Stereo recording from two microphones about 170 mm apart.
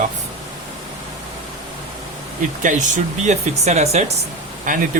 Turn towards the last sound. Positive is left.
turn(degrees=-50)  # may be behind; listen again after turning